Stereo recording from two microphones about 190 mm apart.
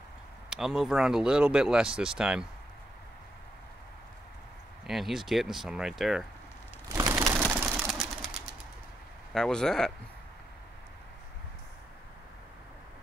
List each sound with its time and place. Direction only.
0.5 s speech: centre (ahead or behind)
4.8 s speech: centre (ahead or behind)
6.9 s a sound: 15° right (ahead or behind)
7.9 s pigeon: centre (ahead or behind)
9.3 s speech: 5° left (ahead or behind)